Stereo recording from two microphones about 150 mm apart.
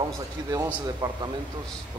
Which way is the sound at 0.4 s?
30° right (ahead or behind).